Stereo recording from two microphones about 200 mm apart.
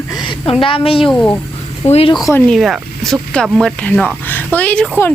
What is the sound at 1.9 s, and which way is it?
Speech, 25° left (ahead or behind).